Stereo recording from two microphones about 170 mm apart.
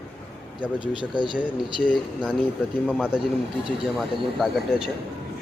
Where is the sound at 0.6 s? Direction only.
30° left (ahead or behind).